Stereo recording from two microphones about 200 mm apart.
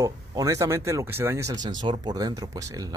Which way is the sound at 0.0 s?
15° right (ahead or behind).